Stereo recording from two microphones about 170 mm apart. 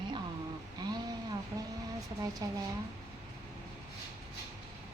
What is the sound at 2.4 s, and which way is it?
Speech, 20° right (ahead or behind).